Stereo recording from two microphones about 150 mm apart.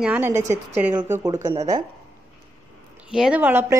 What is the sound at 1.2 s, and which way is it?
Speech, 25° right (ahead or behind).